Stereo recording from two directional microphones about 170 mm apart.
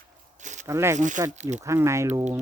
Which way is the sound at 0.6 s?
15° right (ahead or behind).